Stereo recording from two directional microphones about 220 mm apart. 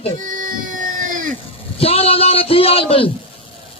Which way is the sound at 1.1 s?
35° right (ahead or behind).